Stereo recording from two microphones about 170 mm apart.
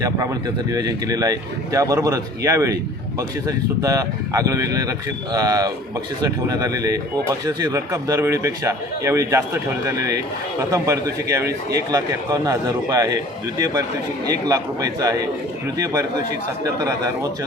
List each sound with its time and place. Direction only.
0.7 s speech: 20° right (ahead or behind)
14.3 s speech: 20° right (ahead or behind)